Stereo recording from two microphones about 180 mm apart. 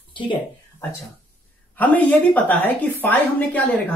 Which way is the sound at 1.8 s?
10° left (ahead or behind).